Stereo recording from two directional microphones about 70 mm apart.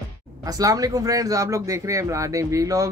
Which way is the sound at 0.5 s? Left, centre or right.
Right.